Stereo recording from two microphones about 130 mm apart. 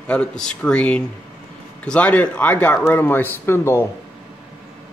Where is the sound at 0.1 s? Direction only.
10° left (ahead or behind).